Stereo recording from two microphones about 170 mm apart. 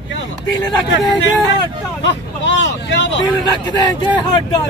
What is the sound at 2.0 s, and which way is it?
Speech, 90° left.